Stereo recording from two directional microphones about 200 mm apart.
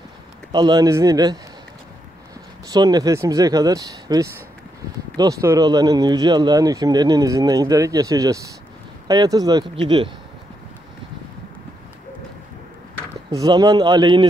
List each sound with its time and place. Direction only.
0.5 s speech: 20° right (ahead or behind)
2.7 s speech: 20° right (ahead or behind)
13.3 s speech: 20° right (ahead or behind)